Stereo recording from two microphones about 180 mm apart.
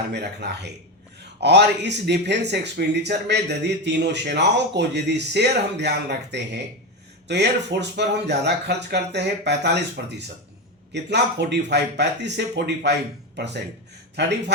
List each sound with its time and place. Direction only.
0.1 s speech: 70° right (ahead or behind)